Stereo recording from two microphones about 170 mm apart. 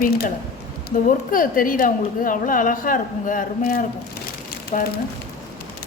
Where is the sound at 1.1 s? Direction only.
55° left (ahead or behind).